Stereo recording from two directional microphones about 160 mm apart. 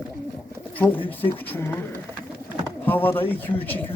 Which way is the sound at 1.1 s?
10° left (ahead or behind).